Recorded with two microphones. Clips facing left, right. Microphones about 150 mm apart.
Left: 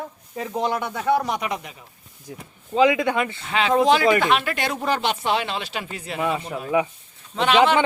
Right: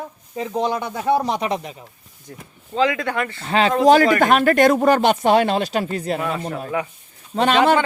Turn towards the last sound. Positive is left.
turn(degrees=-40)  # may be behind; listen again after turning